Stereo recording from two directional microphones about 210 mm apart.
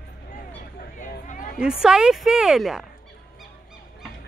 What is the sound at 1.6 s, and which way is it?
Speech, 5° right (ahead or behind).